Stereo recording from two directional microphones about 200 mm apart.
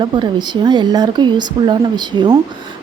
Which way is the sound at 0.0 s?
25° right (ahead or behind).